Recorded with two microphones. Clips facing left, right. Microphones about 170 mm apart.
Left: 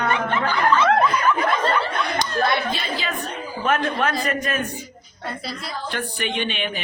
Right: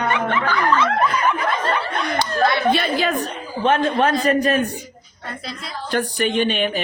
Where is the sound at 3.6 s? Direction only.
30° right (ahead or behind).